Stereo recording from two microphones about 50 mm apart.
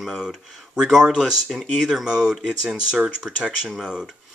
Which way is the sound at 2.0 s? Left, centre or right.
Centre.